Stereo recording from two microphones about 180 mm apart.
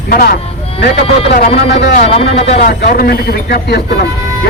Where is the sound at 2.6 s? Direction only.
55° left (ahead or behind).